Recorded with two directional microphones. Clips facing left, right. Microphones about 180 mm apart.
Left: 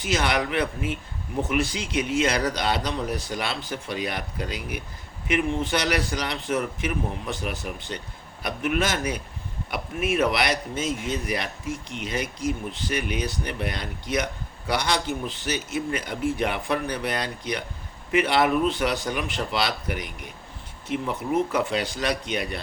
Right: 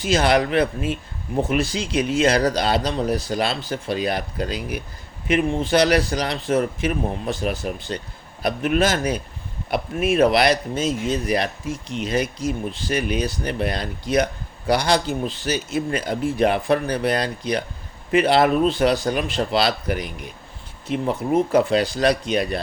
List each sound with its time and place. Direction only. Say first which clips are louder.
0.0 s speech: right 6 dB; 30° right (ahead or behind)